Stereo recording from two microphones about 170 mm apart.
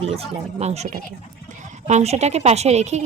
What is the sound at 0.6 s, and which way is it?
Speech, 40° right (ahead or behind).